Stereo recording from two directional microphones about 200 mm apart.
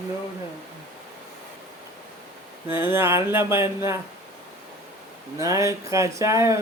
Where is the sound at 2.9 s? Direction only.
10° right (ahead or behind).